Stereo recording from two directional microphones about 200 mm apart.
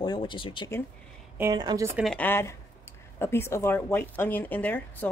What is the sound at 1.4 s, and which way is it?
Speech, 20° right (ahead or behind).